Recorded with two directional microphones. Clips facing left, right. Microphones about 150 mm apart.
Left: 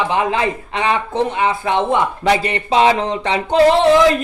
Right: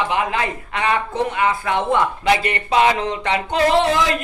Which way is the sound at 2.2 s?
35° left (ahead or behind).